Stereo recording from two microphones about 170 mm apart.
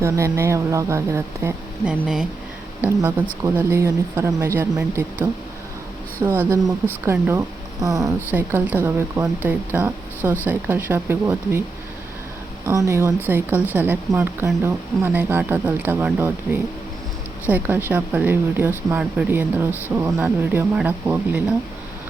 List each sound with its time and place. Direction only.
0.0 s speech: 15° right (ahead or behind)
3.4 s speech: 15° right (ahead or behind)
12.6 s speech: 20° right (ahead or behind)